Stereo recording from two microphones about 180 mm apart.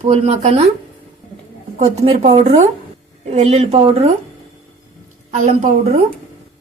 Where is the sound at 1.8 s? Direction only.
35° right (ahead or behind).